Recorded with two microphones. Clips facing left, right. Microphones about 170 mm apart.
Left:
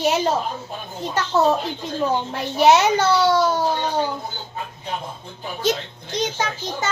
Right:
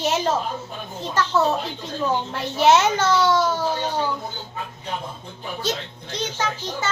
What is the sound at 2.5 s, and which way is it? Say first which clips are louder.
Speech: left 2 dB; 15° left (ahead or behind).